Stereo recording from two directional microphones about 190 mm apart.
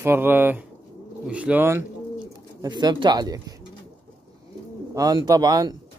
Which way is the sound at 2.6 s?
20° right (ahead or behind).